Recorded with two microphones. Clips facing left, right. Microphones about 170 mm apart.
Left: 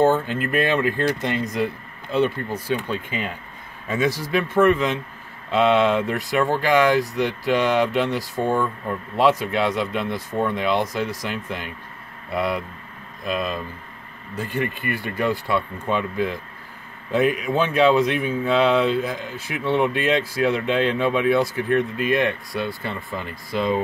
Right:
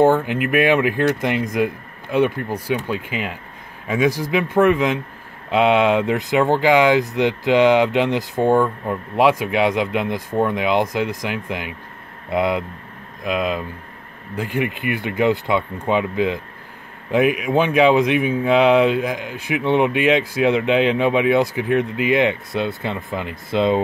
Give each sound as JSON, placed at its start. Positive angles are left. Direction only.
{"t": 0.0, "sound": "speech", "side_deg": -15}